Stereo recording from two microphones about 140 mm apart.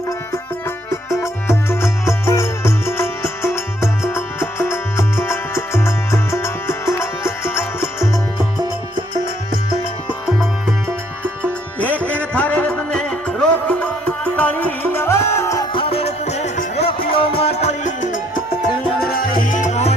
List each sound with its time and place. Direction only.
0.9 s music: 20° left (ahead or behind)
11.8 s music: 10° left (ahead or behind)
12.0 s music: 15° right (ahead or behind)
12.3 s music: 10° left (ahead or behind)
15.7 s music: 40° left (ahead or behind); by 19.9 s 55° left (ahead or behind)